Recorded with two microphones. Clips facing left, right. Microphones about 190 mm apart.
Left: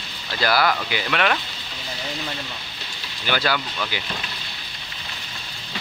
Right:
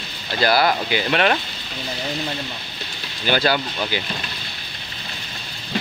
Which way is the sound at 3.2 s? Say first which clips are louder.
Right 4 dB; 30° right (ahead or behind).